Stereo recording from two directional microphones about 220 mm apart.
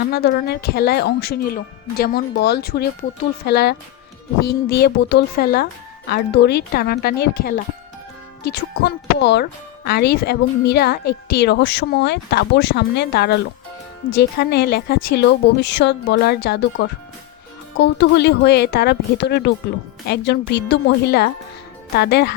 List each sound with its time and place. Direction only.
0.1 s speech: 45° left (ahead or behind)